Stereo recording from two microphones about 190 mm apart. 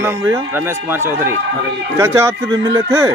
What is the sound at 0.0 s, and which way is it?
A man's voice, 10° right (ahead or behind).